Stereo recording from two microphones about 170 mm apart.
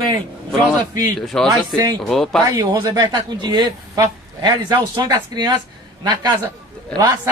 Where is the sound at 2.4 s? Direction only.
20° right (ahead or behind).